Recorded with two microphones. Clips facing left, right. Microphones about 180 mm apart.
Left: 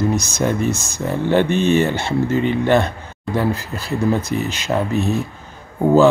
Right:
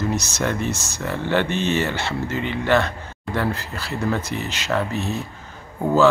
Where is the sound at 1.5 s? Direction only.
50° left (ahead or behind).